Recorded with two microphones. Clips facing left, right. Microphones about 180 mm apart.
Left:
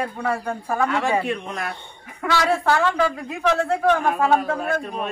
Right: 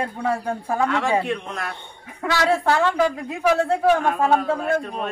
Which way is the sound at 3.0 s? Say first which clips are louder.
Right 1 dB; 20° right (ahead or behind).